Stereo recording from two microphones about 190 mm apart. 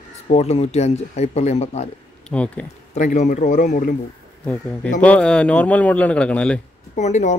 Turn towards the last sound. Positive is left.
turn(degrees=40)  # may be behind; listen again after turning